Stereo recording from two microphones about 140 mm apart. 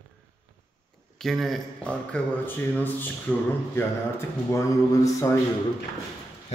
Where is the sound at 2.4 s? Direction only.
15° left (ahead or behind).